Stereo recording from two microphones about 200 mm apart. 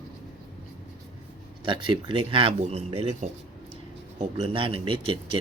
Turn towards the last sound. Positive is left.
turn(degrees=-25)  # may be behind; listen again after turning